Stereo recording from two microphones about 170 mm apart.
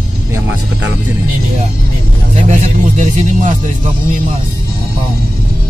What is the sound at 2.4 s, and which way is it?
Speech, 45° right (ahead or behind).